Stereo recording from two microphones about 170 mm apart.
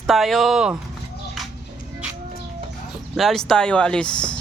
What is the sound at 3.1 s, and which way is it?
Speech, centre (ahead or behind).